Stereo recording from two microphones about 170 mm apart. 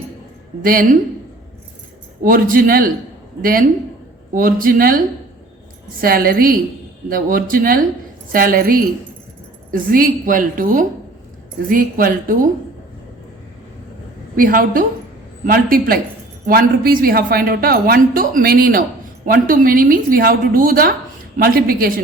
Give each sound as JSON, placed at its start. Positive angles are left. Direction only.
{"t": 0.6, "sound": "speech", "side_deg": -55}
{"t": 2.2, "sound": "speech", "side_deg": -55}
{"t": 6.0, "sound": "a woman's voice", "side_deg": -60}
{"t": 14.3, "sound": "speech", "side_deg": -55}